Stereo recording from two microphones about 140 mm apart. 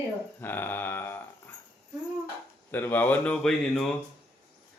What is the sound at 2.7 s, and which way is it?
Speech, 15° left (ahead or behind).